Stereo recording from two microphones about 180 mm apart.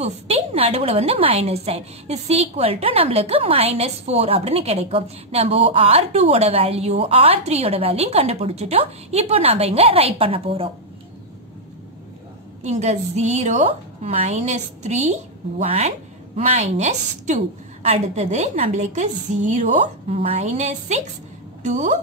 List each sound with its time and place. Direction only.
0.0 s a woman's voice: 35° right (ahead or behind)
12.6 s a woman's voice: 40° right (ahead or behind)